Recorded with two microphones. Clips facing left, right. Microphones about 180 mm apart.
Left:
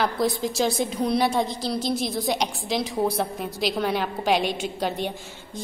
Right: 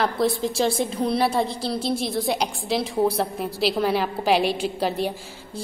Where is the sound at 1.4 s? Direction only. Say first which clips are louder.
Right 1 dB; 30° right (ahead or behind).